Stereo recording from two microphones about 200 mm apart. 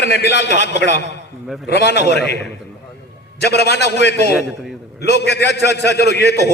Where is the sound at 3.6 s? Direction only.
55° left (ahead or behind).